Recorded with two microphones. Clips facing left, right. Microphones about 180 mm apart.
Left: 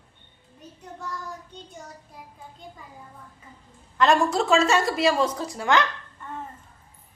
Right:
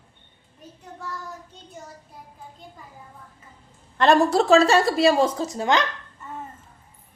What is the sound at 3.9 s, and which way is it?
A woman's voice, 35° right (ahead or behind).